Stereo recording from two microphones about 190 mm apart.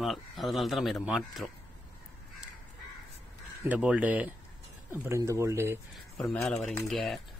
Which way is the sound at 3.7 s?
5° right (ahead or behind).